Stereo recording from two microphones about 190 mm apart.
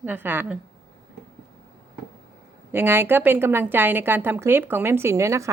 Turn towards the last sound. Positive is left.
turn(degrees=-15)  # may be behind; listen again after turning